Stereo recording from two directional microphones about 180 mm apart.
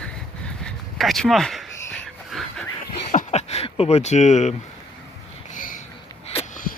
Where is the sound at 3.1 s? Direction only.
35° left (ahead or behind).